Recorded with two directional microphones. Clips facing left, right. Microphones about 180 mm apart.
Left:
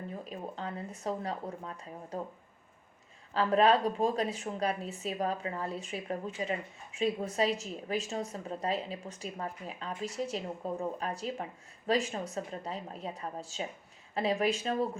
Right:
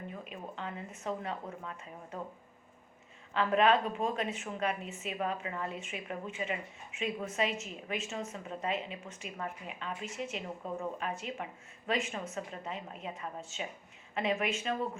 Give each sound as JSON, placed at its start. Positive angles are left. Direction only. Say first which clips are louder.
{"t": 0.1, "sound": "speech", "louder": "left 3 dB", "side_deg": 35}
{"t": 3.3, "sound": "speech", "louder": "left 2 dB", "side_deg": 35}